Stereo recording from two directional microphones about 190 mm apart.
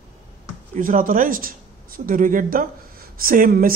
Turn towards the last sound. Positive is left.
turn(degrees=-50)  # may be behind; listen again after turning